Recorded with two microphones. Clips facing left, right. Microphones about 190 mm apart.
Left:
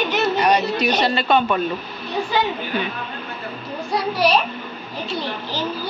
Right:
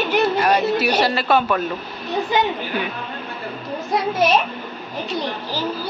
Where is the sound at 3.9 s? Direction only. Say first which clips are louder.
Right 1 dB; 20° right (ahead or behind).